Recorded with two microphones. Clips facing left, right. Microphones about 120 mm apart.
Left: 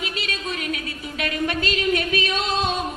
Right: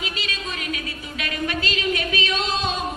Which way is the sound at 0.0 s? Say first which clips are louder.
Left 1 dB; 55° left (ahead or behind).